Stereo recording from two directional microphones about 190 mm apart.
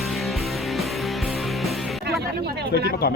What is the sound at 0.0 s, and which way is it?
Music, centre (ahead or behind).